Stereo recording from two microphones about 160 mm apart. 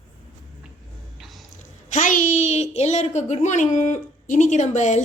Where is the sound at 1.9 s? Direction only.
50° left (ahead or behind).